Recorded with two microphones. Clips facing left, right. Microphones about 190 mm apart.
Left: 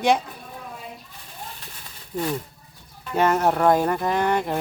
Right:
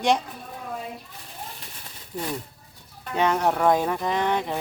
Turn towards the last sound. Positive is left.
turn(degrees=0)  # may be behind; listen again after turning